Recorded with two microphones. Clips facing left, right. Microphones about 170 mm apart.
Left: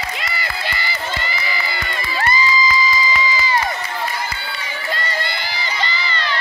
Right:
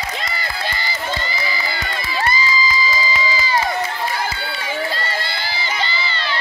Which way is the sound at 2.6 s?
35° right (ahead or behind).